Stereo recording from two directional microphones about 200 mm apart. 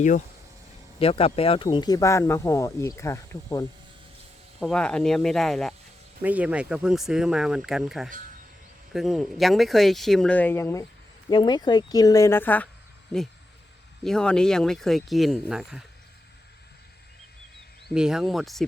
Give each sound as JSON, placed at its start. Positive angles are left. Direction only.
{"t": 0.9, "sound": "speech", "side_deg": 30}
{"t": 4.6, "sound": "a woman's voice", "side_deg": 5}
{"t": 14.0, "sound": "speech", "side_deg": 5}
{"t": 17.8, "sound": "speech", "side_deg": -5}